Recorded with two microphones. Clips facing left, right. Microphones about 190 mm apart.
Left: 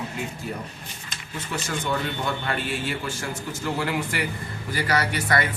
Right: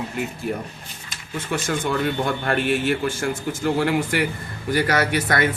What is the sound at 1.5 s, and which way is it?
A man's voice, 50° right (ahead or behind).